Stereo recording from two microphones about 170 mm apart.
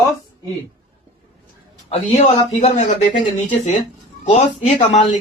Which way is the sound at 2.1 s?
40° left (ahead or behind).